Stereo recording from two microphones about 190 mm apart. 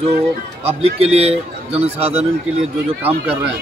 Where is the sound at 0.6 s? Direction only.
30° right (ahead or behind).